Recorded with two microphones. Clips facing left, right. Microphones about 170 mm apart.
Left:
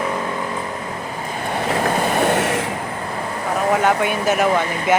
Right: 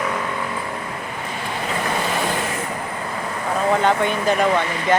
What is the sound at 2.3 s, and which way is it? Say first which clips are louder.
Vehicle: left 6 dB; 80° left.